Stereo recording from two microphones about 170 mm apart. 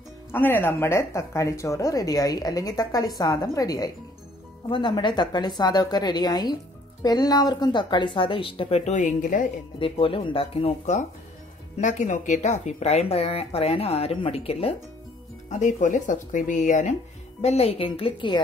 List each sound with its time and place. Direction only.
0.3 s speech: 10° left (ahead or behind); by 9.5 s 50° left (ahead or behind)
9.8 s speech: 30° left (ahead or behind)
15.5 s speech: 45° left (ahead or behind); by 18.4 s 30° left (ahead or behind)